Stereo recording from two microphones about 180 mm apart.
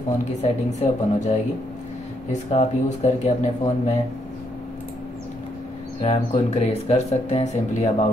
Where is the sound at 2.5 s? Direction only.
40° left (ahead or behind).